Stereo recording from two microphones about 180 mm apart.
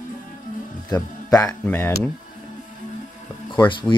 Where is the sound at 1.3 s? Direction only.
20° left (ahead or behind).